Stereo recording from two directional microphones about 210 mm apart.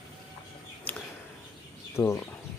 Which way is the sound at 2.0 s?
10° left (ahead or behind).